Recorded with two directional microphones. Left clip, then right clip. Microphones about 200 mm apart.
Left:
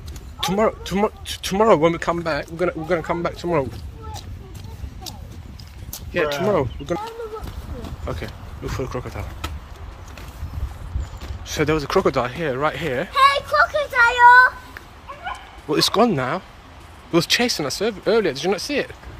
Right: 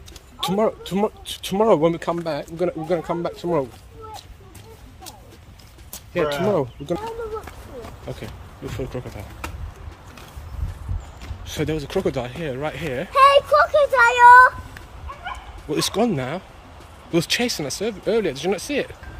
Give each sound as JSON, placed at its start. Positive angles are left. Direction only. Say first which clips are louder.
{"t": 0.4, "sound": "speech", "louder": "left 1 dB", "side_deg": -5}
{"t": 6.1, "sound": "speech", "louder": "left 1 dB", "side_deg": -5}
{"t": 8.2, "sound": "speech", "louder": "left 3 dB", "side_deg": -10}
{"t": 11.4, "sound": "speech", "louder": "left 5 dB", "side_deg": -10}
{"t": 13.3, "sound": "child singing", "louder": "right 3 dB", "side_deg": -30}
{"t": 15.7, "sound": "speech", "louder": "left 4 dB", "side_deg": -5}